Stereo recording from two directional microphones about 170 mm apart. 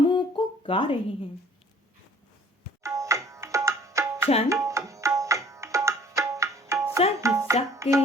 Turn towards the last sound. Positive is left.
turn(degrees=-20)  # may be behind; listen again after turning